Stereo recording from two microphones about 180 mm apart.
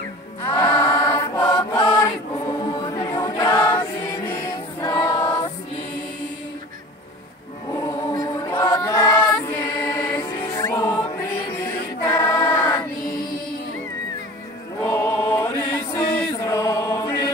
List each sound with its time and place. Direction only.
0.5 s chant: 20° left (ahead or behind)
2.4 s choir: 25° left (ahead or behind)
7.7 s chant: 20° left (ahead or behind)
11.4 s choir: 20° left (ahead or behind)
14.8 s choir: 15° left (ahead or behind)